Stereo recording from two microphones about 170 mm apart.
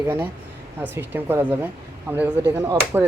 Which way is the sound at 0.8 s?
15° right (ahead or behind).